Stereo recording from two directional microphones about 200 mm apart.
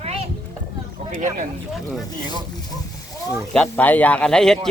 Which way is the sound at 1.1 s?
40° right (ahead or behind).